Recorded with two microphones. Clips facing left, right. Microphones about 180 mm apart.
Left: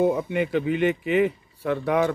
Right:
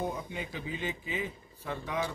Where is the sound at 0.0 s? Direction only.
70° left (ahead or behind).